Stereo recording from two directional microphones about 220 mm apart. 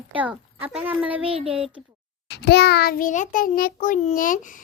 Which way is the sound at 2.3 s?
50° left (ahead or behind).